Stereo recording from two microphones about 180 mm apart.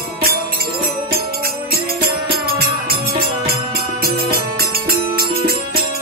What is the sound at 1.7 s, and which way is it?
Music, 55° right (ahead or behind).